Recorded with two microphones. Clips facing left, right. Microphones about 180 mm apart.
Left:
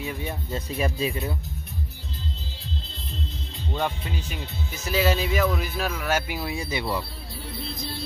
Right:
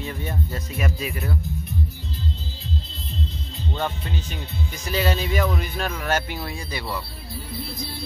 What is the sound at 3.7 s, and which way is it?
Speech, 10° left (ahead or behind).